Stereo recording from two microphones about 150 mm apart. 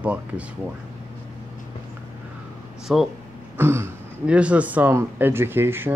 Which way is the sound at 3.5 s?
15° right (ahead or behind).